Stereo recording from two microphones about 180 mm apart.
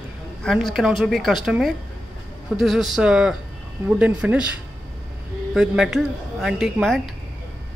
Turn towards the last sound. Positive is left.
turn(degrees=0)  # may be behind; listen again after turning